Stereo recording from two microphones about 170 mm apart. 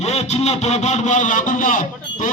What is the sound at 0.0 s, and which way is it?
Speech, 40° left (ahead or behind).